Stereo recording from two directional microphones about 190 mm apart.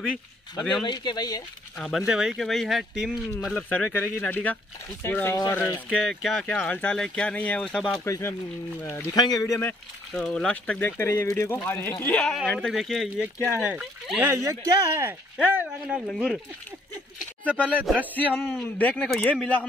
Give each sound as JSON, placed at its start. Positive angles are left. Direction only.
{"t": 0.8, "sound": "speech", "side_deg": 20}
{"t": 1.8, "sound": "speech", "side_deg": 0}
{"t": 3.5, "sound": "speech", "side_deg": 10}
{"t": 8.0, "sound": "speech", "side_deg": 15}
{"t": 17.6, "sound": "speech", "side_deg": -10}
{"t": 18.1, "sound": "speech", "side_deg": 10}